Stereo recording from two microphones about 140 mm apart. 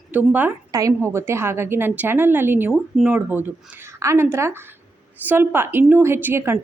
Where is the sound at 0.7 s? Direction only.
25° right (ahead or behind).